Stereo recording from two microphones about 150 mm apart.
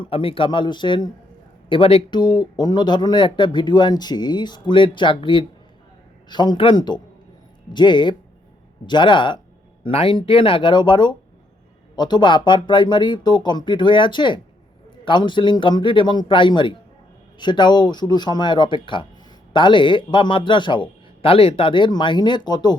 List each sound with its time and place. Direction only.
0.0 s a man's voice: 35° left (ahead or behind)